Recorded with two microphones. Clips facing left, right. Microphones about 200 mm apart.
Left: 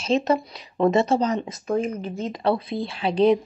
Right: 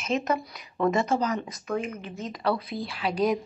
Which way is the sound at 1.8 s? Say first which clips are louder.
Left 7 dB; 35° left (ahead or behind).